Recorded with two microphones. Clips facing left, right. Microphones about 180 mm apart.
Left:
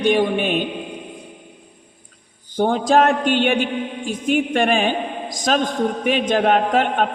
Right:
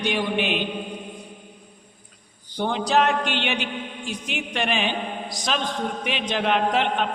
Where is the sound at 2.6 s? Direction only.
45° left (ahead or behind).